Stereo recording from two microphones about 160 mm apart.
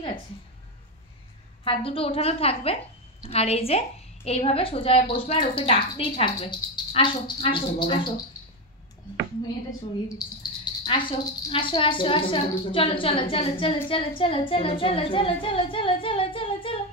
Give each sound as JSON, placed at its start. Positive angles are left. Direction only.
{"t": 1.6, "sound": "speech", "side_deg": 35}
{"t": 9.7, "sound": "speech", "side_deg": 25}